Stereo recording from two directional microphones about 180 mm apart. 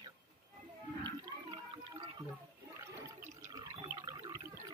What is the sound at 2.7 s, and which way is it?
Water, 15° right (ahead or behind).